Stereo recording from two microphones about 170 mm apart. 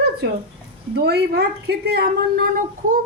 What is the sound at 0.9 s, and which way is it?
A woman's voice, 75° right (ahead or behind).